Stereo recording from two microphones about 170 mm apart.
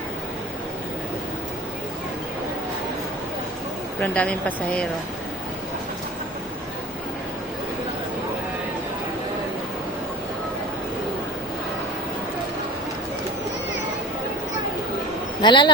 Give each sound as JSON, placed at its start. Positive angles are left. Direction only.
{"t": 4.0, "sound": "a woman's voice", "side_deg": 5}
{"t": 15.4, "sound": "a man's voice", "side_deg": 25}